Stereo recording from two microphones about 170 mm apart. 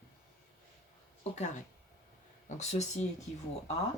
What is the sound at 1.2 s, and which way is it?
Speech, 45° left (ahead or behind).